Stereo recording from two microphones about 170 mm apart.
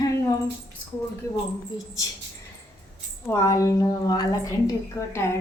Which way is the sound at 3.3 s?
20° left (ahead or behind).